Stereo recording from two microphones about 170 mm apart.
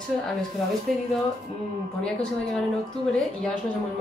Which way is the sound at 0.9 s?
Centre (ahead or behind).